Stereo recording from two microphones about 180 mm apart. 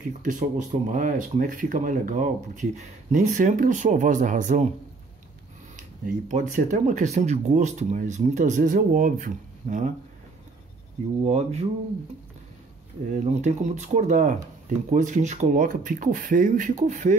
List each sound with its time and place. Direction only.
0.2 s speech: 45° right (ahead or behind)
5.8 s speech: 45° right (ahead or behind)
11.2 s a sound: 35° right (ahead or behind)
13.1 s speech: 40° right (ahead or behind)